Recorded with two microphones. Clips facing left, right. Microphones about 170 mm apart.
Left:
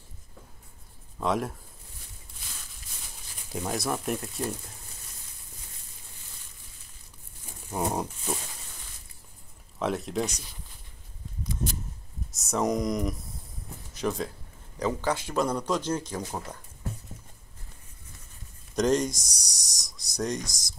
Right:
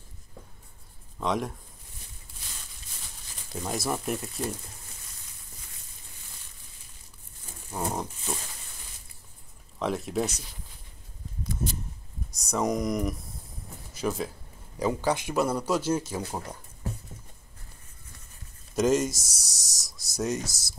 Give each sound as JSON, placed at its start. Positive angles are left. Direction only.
{"t": 1.2, "sound": "speech", "side_deg": 0}
{"t": 3.5, "sound": "speech", "side_deg": 0}
{"t": 7.7, "sound": "wild animals", "side_deg": 15}
{"t": 9.8, "sound": "speech", "side_deg": 0}
{"t": 12.3, "sound": "speech", "side_deg": 0}
{"t": 18.8, "sound": "speech", "side_deg": -5}